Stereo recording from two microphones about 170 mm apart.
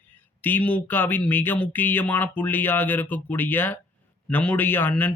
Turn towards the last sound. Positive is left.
turn(degrees=10)  # may be behind; listen again after turning